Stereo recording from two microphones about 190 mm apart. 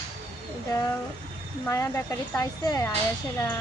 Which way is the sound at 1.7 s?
15° left (ahead or behind).